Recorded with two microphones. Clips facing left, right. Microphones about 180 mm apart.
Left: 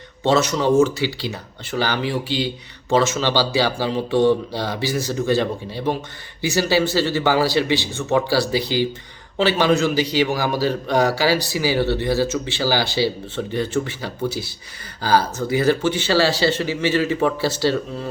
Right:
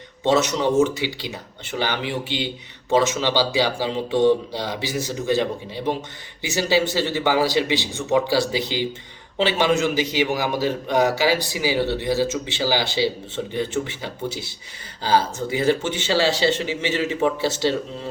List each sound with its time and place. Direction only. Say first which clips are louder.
0.3 s speech: left 2 dB; 20° right (ahead or behind)